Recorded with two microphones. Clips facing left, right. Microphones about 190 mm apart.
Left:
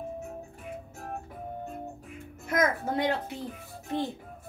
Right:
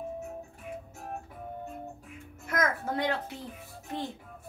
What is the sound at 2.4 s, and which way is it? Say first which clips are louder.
Music: left 3 dB; 20° left (ahead or behind).